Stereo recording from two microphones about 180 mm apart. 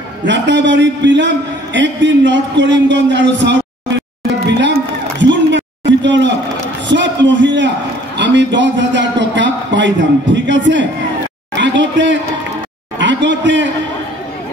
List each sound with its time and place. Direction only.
0.3 s a man's voice: 90° right
4.5 s music: 80° right
5.2 s a sound: 80° right
8.2 s a man's voice: 80° right
11.5 s a sound: 85° right
13.0 s a man's voice: 80° right